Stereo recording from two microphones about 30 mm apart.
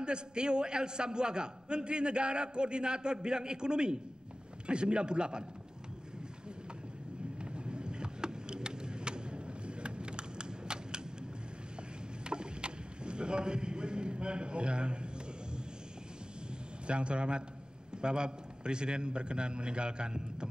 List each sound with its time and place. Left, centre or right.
0.0 s a man's voice: right
7.5 s vehicle: right
12.3 s boat: right
16.8 s a man's voice: right